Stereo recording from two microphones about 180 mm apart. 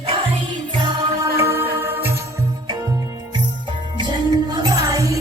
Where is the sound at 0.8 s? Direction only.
15° right (ahead or behind).